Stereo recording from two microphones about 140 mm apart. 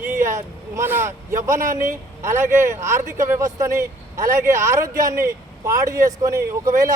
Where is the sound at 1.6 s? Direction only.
70° right (ahead or behind).